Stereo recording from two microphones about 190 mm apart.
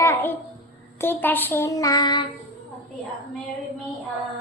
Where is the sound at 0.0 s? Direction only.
10° left (ahead or behind).